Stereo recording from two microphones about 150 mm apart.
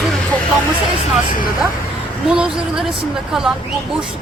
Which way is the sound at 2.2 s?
5° right (ahead or behind).